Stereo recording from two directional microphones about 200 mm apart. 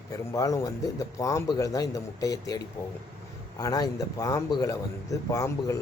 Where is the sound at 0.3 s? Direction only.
15° left (ahead or behind).